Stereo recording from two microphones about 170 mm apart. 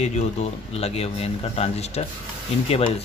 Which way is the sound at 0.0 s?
40° left (ahead or behind).